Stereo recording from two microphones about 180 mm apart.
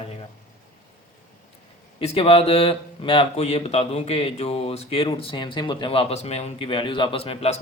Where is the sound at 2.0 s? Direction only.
35° left (ahead or behind).